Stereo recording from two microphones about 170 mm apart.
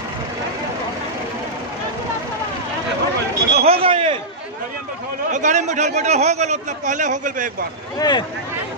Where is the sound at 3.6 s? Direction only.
35° right (ahead or behind).